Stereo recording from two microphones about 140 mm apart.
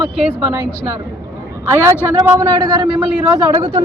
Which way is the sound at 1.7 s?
20° right (ahead or behind).